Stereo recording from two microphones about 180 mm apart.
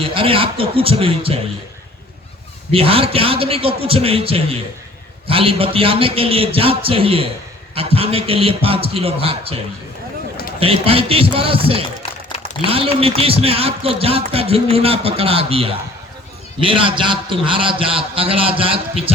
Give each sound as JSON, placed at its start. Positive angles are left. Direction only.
{"t": 0.0, "sound": "a man's voice", "side_deg": -30}
{"t": 2.7, "sound": "a man's voice", "side_deg": -30}
{"t": 10.6, "sound": "a man's voice", "side_deg": -30}